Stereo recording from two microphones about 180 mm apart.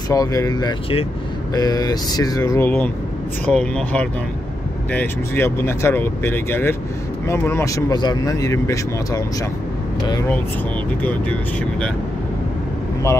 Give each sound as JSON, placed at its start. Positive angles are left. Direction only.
{"t": 0.1, "sound": "speech", "side_deg": 20}
{"t": 11.0, "sound": "speech", "side_deg": 10}